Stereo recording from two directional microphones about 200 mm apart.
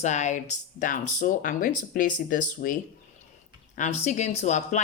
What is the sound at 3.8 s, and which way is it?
Speech, 35° left (ahead or behind).